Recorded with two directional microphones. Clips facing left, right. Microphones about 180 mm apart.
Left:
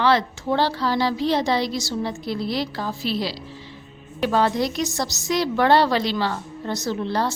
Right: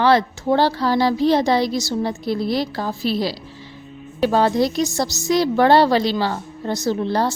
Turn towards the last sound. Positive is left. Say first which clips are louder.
# right 4 dB
turn(degrees=-35)  # may be behind; listen again after turning